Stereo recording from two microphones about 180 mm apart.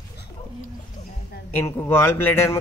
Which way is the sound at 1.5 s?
10° left (ahead or behind).